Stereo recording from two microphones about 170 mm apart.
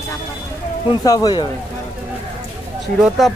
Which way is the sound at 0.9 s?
20° left (ahead or behind).